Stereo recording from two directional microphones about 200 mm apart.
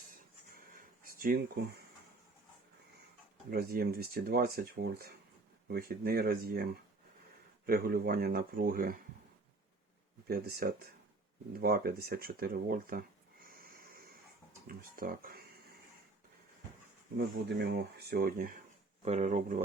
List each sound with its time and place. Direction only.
0.1 s a sound: 45° right (ahead or behind)
3.5 s speech: 50° right (ahead or behind)
7.7 s speech: 45° right (ahead or behind)
10.2 s speech: 50° right (ahead or behind)
11.6 s a sound: 50° right (ahead or behind)
14.7 s speech: 45° right (ahead or behind)
17.2 s speech: 55° right (ahead or behind); by 19.6 s 40° right (ahead or behind)